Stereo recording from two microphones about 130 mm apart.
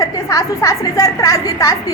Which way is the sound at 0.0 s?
25° left (ahead or behind).